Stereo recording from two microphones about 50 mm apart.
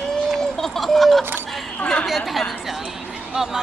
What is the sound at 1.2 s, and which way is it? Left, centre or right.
Speech, right.